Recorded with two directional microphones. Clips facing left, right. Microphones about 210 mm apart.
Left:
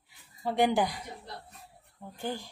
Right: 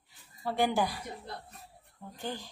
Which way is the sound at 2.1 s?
10° left (ahead or behind).